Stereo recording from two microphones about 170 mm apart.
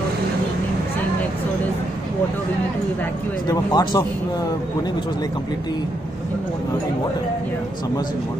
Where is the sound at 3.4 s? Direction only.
25° left (ahead or behind).